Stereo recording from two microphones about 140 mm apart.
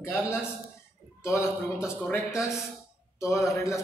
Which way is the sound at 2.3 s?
5° right (ahead or behind).